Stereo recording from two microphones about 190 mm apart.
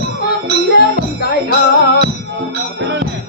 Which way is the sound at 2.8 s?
70° right (ahead or behind).